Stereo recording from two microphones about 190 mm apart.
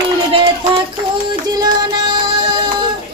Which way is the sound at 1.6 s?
20° right (ahead or behind).